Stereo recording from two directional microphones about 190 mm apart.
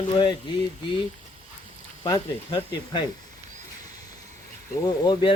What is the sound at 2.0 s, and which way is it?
Speech, 20° left (ahead or behind).